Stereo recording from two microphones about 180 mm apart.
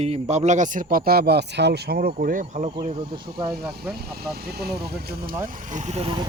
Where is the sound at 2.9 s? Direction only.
25° right (ahead or behind).